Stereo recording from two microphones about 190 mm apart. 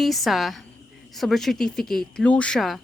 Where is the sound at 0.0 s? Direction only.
Centre (ahead or behind).